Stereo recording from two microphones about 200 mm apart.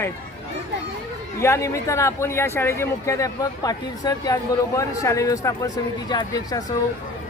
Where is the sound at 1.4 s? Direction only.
15° left (ahead or behind).